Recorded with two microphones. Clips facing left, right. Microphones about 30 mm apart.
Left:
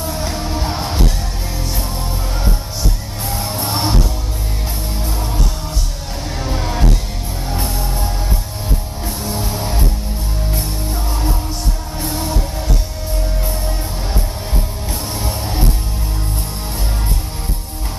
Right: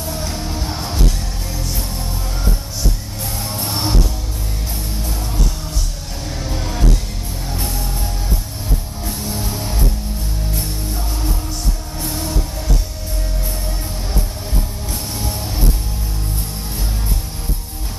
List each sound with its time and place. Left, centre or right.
0.0 s music: centre
3.3 s music: centre
6.4 s music: left
12.0 s music: centre